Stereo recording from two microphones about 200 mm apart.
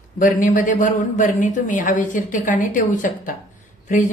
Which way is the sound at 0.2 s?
40° left (ahead or behind).